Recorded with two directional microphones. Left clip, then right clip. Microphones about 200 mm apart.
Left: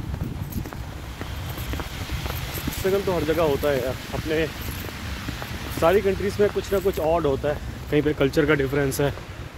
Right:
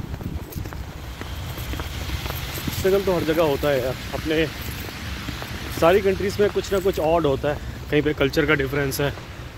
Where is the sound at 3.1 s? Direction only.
60° right (ahead or behind).